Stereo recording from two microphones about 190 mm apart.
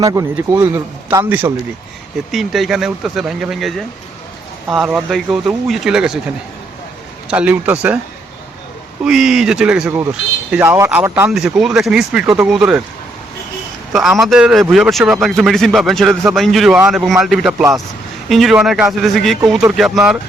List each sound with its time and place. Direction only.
0.0 s a man's voice: 15° right (ahead or behind)
7.3 s a man's voice: 5° right (ahead or behind)
9.0 s a man's voice: 5° right (ahead or behind)
13.9 s a man's voice: centre (ahead or behind)